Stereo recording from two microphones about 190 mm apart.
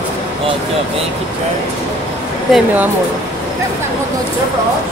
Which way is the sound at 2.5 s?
10° right (ahead or behind).